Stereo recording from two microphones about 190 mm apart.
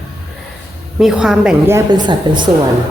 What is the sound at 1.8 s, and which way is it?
Speech, 20° right (ahead or behind).